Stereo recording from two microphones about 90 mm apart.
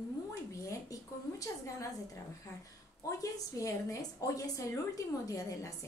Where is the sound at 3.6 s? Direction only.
40° left (ahead or behind).